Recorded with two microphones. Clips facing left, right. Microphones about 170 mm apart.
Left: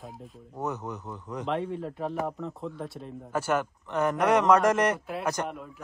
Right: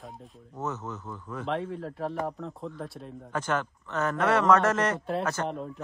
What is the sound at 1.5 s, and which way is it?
A man's voice, centre (ahead or behind).